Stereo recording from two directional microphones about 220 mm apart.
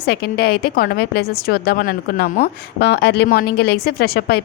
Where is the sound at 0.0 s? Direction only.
45° left (ahead or behind).